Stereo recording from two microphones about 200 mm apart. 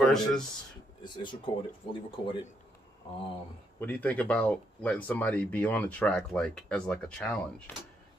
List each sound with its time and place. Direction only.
0.0 s speech: 5° left (ahead or behind)
1.0 s speech: 20° left (ahead or behind)
3.8 s speech: 10° left (ahead or behind)